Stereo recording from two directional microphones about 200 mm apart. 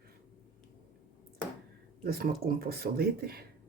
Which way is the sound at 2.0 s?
50° right (ahead or behind).